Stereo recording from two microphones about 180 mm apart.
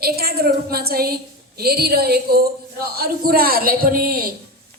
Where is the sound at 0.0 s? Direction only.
60° right (ahead or behind).